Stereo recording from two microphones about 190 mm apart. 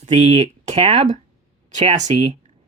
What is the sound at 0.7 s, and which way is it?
Speech, 35° right (ahead or behind).